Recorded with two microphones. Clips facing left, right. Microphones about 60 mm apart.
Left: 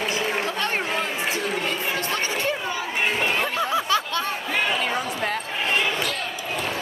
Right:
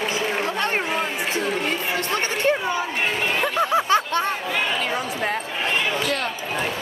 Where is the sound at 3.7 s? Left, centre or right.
Right.